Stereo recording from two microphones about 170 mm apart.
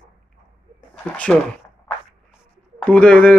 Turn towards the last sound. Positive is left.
turn(degrees=5)  # may be behind; listen again after turning